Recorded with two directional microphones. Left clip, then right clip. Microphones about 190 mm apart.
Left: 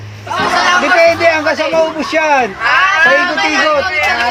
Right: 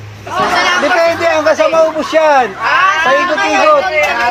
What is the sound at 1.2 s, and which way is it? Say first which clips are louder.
Speech: right 1 dB; 15° left (ahead or behind).